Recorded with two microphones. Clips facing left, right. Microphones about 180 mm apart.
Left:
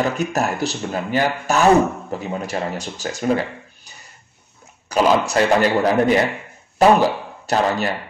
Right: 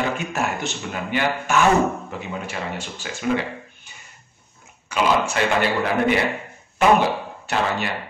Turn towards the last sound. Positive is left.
turn(degrees=40)  # may be behind; listen again after turning